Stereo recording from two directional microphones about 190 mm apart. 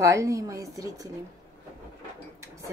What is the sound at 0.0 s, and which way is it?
A woman's voice, 15° right (ahead or behind).